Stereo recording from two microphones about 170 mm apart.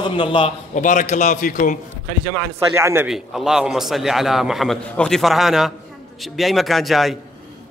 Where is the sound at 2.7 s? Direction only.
15° right (ahead or behind).